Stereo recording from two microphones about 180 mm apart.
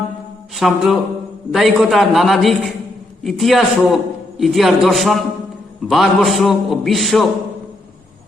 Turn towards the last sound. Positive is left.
turn(degrees=0)  # may be behind; listen again after turning